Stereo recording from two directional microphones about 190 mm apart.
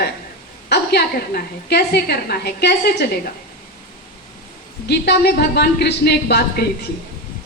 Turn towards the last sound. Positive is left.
turn(degrees=60)  # may be behind; listen again after turning